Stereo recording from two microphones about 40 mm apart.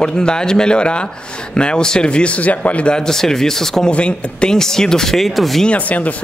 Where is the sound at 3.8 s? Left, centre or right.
Left.